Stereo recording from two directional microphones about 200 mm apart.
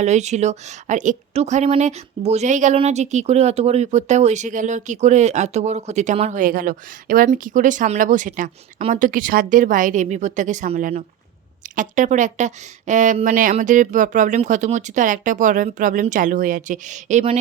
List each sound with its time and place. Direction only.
0.0 s a woman's voice: 35° right (ahead or behind)